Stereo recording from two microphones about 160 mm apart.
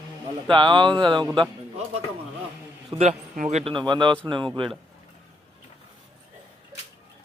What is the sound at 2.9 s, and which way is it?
Speech, 40° right (ahead or behind).